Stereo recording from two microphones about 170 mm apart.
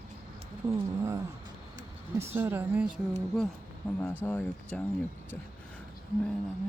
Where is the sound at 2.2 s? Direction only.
15° right (ahead or behind).